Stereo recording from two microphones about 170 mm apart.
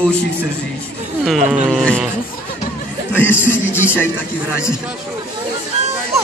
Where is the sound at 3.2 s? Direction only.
10° left (ahead or behind).